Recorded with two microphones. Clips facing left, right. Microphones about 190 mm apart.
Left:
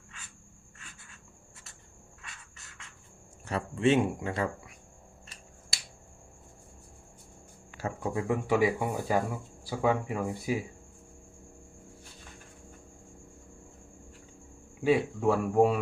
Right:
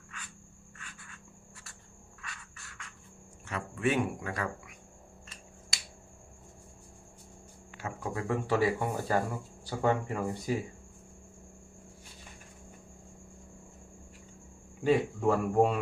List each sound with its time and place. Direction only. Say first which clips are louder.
2.2 s a sound: right 4 dB; 20° left (ahead or behind)
3.4 s speech: left 5 dB; 30° left (ahead or behind)
8.1 s speech: left 2 dB; 15° left (ahead or behind)
14.8 s speech: left 1 dB; 5° left (ahead or behind)